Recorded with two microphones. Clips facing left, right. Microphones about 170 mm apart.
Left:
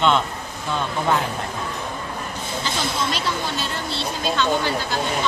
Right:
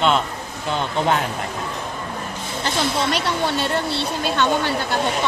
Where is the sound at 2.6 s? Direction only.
65° right (ahead or behind).